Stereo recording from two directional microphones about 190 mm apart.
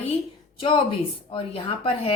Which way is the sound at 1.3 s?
30° left (ahead or behind).